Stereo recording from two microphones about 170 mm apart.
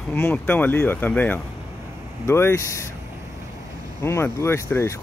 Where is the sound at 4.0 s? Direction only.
15° left (ahead or behind).